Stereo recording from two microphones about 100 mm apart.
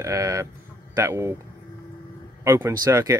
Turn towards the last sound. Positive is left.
turn(degrees=-35)  # may be behind; listen again after turning